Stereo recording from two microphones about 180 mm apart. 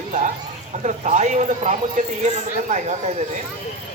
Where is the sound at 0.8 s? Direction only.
40° right (ahead or behind).